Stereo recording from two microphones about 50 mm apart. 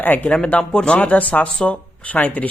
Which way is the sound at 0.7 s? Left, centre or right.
Centre.